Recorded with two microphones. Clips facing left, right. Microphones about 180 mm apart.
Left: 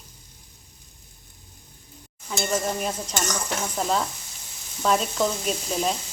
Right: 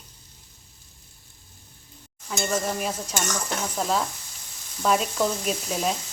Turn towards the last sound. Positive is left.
turn(degrees=-5)  # may be behind; listen again after turning